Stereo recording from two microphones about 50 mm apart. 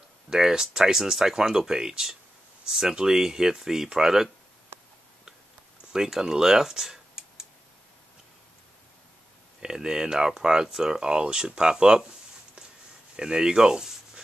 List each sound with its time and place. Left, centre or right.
0.3 s speech: centre
5.9 s speech: centre
9.6 s speech: centre
13.1 s speech: centre